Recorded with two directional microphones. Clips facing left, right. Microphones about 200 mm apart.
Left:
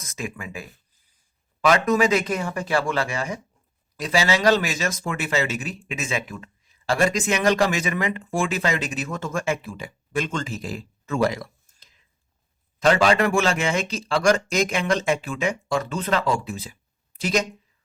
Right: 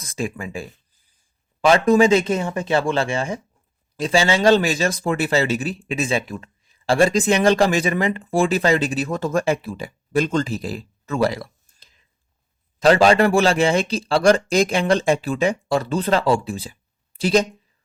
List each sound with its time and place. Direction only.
0.0 s speech: 30° right (ahead or behind)